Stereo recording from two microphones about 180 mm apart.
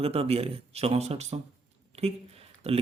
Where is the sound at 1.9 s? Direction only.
35° right (ahead or behind).